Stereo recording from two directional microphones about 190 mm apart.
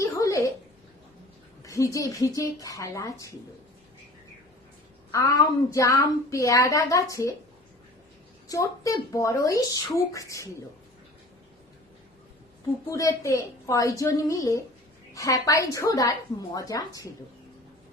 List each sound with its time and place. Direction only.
0.0 s a sound: 15° left (ahead or behind)
1.6 s a woman's voice: 15° left (ahead or behind)
5.1 s a woman's voice: 15° left (ahead or behind)
8.4 s a woman's voice: 20° left (ahead or behind)
12.9 s a woman's voice: 15° left (ahead or behind)